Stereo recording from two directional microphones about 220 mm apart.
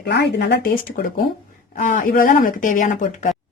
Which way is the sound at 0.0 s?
50° left (ahead or behind).